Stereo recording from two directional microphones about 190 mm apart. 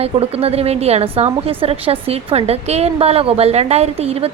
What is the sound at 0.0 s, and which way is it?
A woman's voice, 30° right (ahead or behind).